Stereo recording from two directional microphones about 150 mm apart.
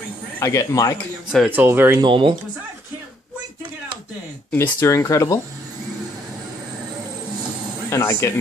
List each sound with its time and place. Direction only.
0.4 s speech: 20° left (ahead or behind)
1.3 s speech: 10° right (ahead or behind)
2.0 s speech: 35° right (ahead or behind)
4.5 s speech: 15° left (ahead or behind)
7.9 s speech: 15° left (ahead or behind)